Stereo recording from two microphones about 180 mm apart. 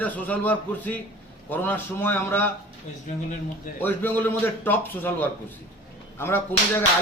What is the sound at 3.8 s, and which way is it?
A man's voice, 10° left (ahead or behind).